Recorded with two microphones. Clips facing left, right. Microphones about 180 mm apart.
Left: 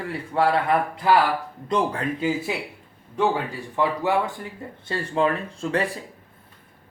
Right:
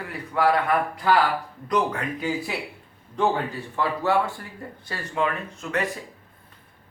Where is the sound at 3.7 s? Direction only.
15° left (ahead or behind).